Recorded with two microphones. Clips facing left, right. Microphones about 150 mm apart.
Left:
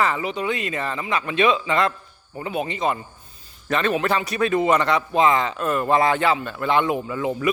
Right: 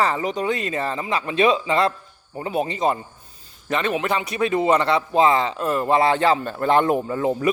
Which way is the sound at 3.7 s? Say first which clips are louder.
Left 1 dB; 20° right (ahead or behind).